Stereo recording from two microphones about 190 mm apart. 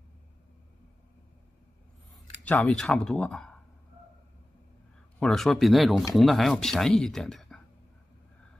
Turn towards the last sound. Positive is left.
turn(degrees=0)  # may be behind; listen again after turning